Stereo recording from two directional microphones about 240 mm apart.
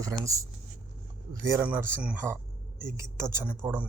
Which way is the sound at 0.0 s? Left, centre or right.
Centre.